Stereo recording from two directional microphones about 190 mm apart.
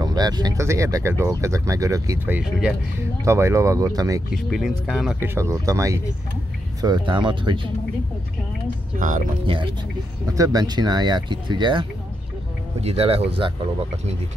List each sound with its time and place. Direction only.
0.0 s speech: 20° right (ahead or behind)
4.3 s speech: centre (ahead or behind); by 7.6 s 25° right (ahead or behind)
9.5 s speech: 25° right (ahead or behind)
12.8 s speech: 30° right (ahead or behind)